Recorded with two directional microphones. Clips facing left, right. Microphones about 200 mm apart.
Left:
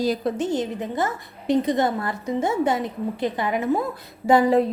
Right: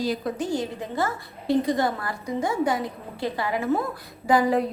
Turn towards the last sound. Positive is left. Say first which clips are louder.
# left 4 dB
turn(degrees=25)  # may be behind; listen again after turning